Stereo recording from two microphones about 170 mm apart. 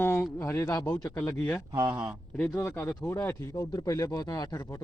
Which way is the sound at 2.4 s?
15° left (ahead or behind).